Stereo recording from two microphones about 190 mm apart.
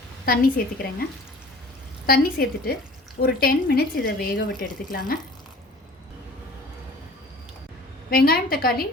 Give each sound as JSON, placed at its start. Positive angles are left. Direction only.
{"t": 0.3, "sound": "speech", "side_deg": 50}
{"t": 2.0, "sound": "a woman's voice", "side_deg": 55}
{"t": 8.1, "sound": "speech", "side_deg": 50}